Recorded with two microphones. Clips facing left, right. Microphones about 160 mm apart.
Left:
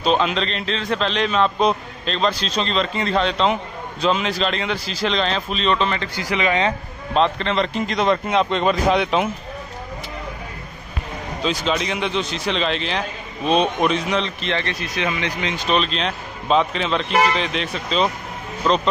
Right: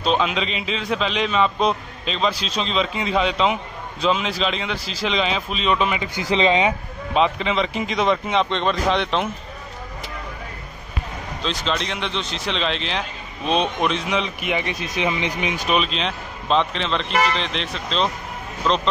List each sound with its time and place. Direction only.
0.0 s speech: centre (ahead or behind)
6.2 s speech: 25° right (ahead or behind)
7.2 s speech: 5° right (ahead or behind)
11.4 s speech: 5° left (ahead or behind)